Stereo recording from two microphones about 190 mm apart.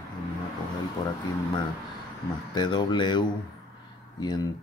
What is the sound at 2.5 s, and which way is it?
Speech, 25° left (ahead or behind).